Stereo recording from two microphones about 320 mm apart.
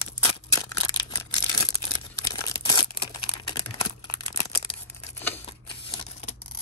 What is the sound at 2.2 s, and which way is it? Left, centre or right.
Crumpling, centre.